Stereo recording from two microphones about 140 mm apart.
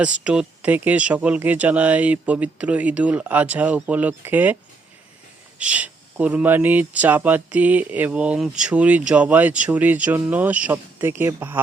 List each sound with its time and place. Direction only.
0.0 s speech: 10° right (ahead or behind)
5.5 s speech: 10° right (ahead or behind)